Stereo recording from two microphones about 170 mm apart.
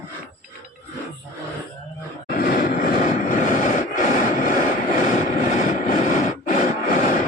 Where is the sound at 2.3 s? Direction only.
60° left (ahead or behind).